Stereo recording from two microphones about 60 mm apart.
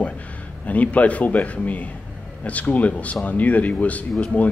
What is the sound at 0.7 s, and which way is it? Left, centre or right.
A man's voice, left.